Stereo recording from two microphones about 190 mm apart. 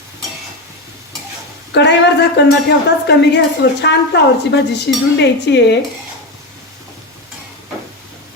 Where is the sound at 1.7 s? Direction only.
65° left (ahead or behind).